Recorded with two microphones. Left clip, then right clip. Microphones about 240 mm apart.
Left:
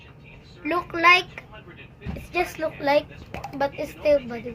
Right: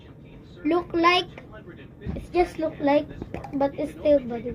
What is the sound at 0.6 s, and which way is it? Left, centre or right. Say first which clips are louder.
Speech: left 2 dB; centre.